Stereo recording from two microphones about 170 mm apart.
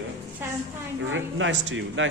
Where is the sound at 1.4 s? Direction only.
90° right.